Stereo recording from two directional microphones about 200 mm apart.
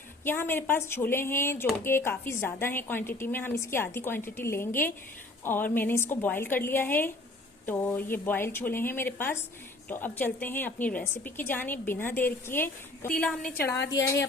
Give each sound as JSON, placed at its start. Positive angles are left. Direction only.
{"t": 0.3, "sound": "a woman's voice", "side_deg": 10}
{"t": 13.7, "sound": "a woman's voice", "side_deg": 60}